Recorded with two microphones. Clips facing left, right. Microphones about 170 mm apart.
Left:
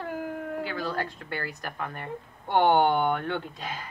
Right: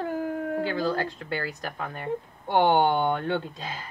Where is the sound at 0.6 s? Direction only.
30° right (ahead or behind).